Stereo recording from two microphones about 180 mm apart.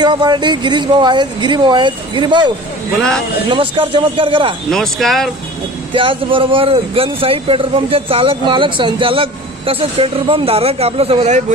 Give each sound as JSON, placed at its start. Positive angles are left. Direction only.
{"t": 0.0, "sound": "speech", "side_deg": -25}
{"t": 4.6, "sound": "speech", "side_deg": 0}
{"t": 5.9, "sound": "a man's voice", "side_deg": -30}